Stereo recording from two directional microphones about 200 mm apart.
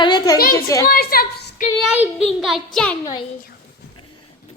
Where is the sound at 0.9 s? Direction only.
50° left (ahead or behind).